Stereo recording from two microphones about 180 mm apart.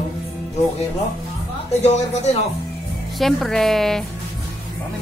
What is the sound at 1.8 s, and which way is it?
Speech, 40° left (ahead or behind).